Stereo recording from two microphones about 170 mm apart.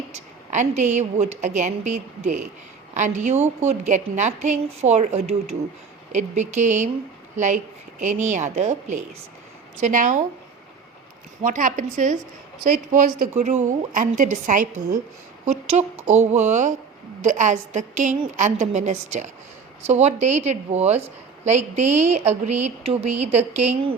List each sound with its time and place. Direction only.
0.5 s a woman's voice: 45° right (ahead or behind)
11.4 s a woman's voice: 50° right (ahead or behind)
15.8 s a woman's voice: 40° right (ahead or behind)